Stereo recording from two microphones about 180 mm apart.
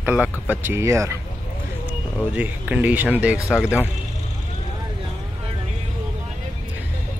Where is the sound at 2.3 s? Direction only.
10° right (ahead or behind).